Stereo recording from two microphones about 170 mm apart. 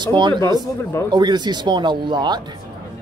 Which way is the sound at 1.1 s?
25° right (ahead or behind).